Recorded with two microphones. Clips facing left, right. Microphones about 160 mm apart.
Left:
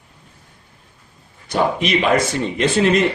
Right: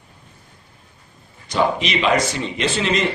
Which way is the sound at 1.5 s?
55° left (ahead or behind).